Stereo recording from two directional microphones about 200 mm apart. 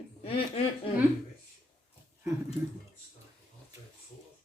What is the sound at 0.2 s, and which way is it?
Speech, 30° left (ahead or behind).